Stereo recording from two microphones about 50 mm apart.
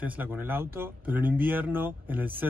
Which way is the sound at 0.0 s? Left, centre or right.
Right.